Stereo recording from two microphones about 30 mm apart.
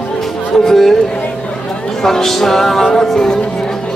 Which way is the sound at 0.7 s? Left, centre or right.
Centre.